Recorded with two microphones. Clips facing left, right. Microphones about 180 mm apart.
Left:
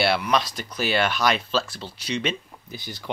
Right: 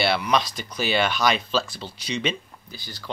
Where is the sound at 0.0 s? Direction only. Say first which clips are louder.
Even; 5° left (ahead or behind).